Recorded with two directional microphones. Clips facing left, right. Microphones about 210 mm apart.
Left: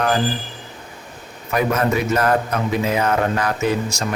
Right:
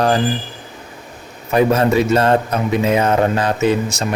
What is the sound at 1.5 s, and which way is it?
A man's voice, 30° right (ahead or behind).